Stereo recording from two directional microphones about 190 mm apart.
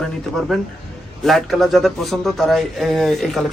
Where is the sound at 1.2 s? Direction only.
Centre (ahead or behind).